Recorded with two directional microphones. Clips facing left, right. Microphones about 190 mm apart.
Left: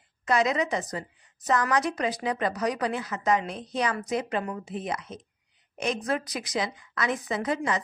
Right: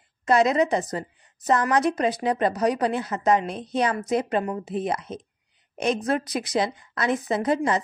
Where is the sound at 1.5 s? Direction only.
25° right (ahead or behind).